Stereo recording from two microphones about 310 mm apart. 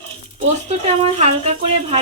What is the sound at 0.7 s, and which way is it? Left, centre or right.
A woman's voice, right.